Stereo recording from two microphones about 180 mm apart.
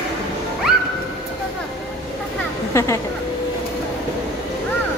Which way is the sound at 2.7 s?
15° left (ahead or behind).